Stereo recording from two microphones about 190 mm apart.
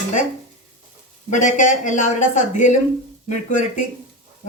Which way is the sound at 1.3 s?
40° left (ahead or behind).